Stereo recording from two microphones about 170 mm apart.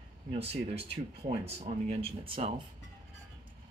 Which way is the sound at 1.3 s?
35° right (ahead or behind).